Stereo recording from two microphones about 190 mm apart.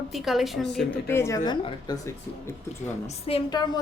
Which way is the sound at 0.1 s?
Centre (ahead or behind).